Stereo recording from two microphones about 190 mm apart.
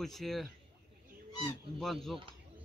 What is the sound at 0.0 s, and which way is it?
Speech, centre (ahead or behind).